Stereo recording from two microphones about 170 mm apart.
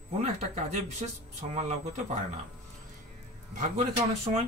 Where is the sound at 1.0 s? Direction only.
35° right (ahead or behind).